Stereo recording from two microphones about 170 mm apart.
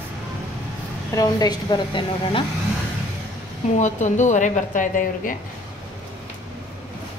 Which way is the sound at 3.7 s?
45° left (ahead or behind).